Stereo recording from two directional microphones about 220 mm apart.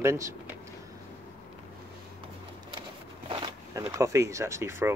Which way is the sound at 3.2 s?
20° right (ahead or behind).